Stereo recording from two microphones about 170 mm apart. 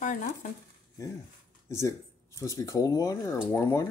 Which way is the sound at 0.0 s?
45° left (ahead or behind).